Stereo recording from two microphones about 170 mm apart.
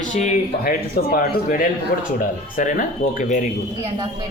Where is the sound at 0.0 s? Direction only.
45° left (ahead or behind).